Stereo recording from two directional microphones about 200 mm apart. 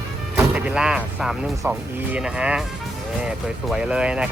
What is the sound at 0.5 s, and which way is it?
Speech, 5° right (ahead or behind).